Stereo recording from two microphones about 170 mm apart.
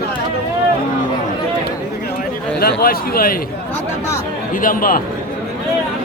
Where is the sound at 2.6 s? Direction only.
60° left (ahead or behind).